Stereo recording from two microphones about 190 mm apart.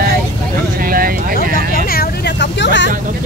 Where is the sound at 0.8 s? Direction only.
50° right (ahead or behind).